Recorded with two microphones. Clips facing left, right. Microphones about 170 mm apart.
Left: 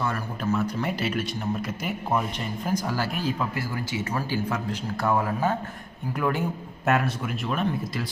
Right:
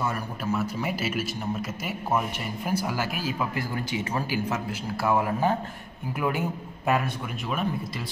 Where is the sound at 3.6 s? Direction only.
15° right (ahead or behind).